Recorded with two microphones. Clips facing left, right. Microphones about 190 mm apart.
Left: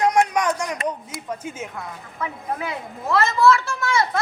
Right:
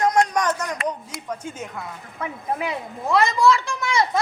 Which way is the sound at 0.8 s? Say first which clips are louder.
Even; 10° left (ahead or behind).